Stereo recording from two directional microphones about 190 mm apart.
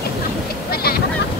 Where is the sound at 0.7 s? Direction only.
55° left (ahead or behind).